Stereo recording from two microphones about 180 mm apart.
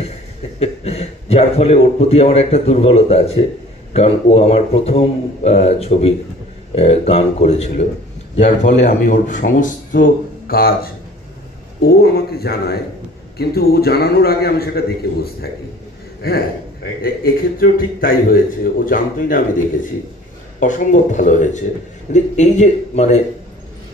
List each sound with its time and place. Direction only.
0.6 s a man's voice: 35° left (ahead or behind)